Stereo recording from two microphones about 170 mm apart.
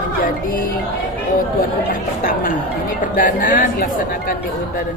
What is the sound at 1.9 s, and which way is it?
A woman's voice, 55° left (ahead or behind).